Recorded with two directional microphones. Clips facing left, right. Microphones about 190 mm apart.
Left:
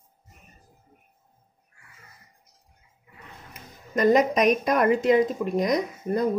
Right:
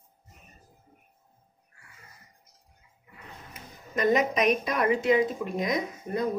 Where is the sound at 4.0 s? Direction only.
40° left (ahead or behind).